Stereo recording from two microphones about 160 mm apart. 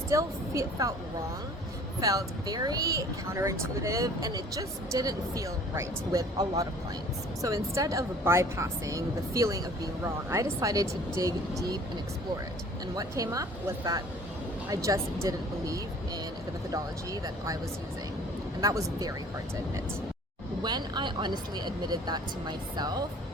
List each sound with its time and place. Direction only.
0.1 s speech: 20° right (ahead or behind)
2.0 s speech: 20° right (ahead or behind)
13.0 s speech: 20° right (ahead or behind)
18.6 s speech: 20° right (ahead or behind)
20.7 s speech: 25° right (ahead or behind)